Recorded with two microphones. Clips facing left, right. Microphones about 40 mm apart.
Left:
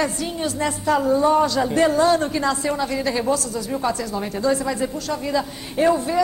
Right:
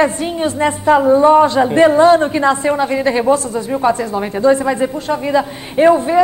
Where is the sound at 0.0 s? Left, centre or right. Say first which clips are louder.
Right 8 dB; right.